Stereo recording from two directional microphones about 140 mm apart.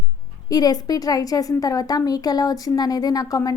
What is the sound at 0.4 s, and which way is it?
A woman's voice, 25° left (ahead or behind).